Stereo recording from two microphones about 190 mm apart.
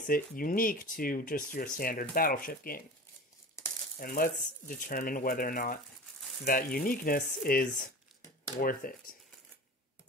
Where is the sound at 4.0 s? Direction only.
50° left (ahead or behind).